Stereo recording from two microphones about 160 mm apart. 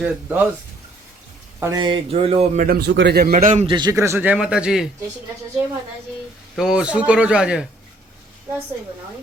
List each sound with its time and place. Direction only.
0.0 s speech: 10° right (ahead or behind)
1.5 s speech: 20° right (ahead or behind); by 2.5 s 40° right (ahead or behind)
2.6 s a man's voice: 70° right (ahead or behind); by 3.7 s 50° right (ahead or behind)
3.7 s a man's voice: 30° right (ahead or behind)
3.9 s speech: 15° right (ahead or behind)
6.6 s speech: 5° right (ahead or behind)